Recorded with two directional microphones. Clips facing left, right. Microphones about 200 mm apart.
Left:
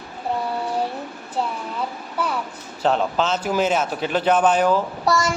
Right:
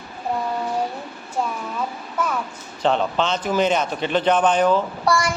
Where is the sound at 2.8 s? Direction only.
5° left (ahead or behind).